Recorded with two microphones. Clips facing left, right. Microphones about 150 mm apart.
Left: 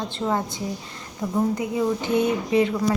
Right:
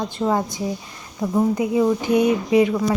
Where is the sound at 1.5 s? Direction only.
20° right (ahead or behind).